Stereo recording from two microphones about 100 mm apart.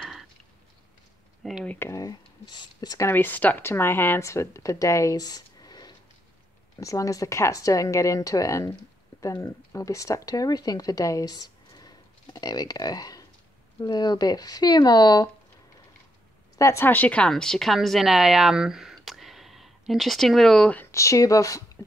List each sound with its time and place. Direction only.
0.0 s a sound: 5° right (ahead or behind)
1.4 s speech: centre (ahead or behind)
1.8 s speech: 30° left (ahead or behind)
3.0 s speech: 20° left (ahead or behind); by 15.2 s 40° left (ahead or behind)
16.5 s a woman's voice: 30° left (ahead or behind)
16.9 s a woman's voice: 15° left (ahead or behind)
20.7 s speech: 25° left (ahead or behind)